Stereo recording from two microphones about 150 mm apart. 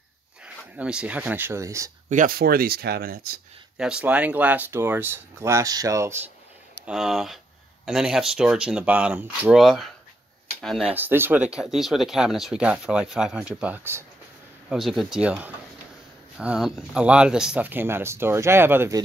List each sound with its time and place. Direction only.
0.7 s speech: 5° right (ahead or behind)
2.0 s speech: 65° right (ahead or behind); by 3.3 s 85° right
3.7 s speech: 5° right (ahead or behind)
6.9 s speech: 5° right (ahead or behind)
10.9 s speech: 15° right (ahead or behind)
14.7 s speech: centre (ahead or behind)